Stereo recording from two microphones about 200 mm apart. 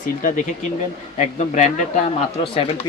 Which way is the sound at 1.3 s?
35° left (ahead or behind).